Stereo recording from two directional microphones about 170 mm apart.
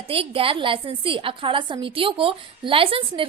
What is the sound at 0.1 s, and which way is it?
A woman's voice, 35° right (ahead or behind).